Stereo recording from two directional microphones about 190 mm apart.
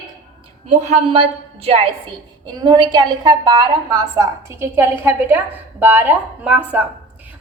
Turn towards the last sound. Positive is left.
turn(degrees=-10)  # may be behind; listen again after turning